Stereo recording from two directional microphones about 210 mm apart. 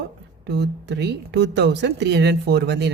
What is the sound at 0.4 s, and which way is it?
Speech, 50° right (ahead or behind).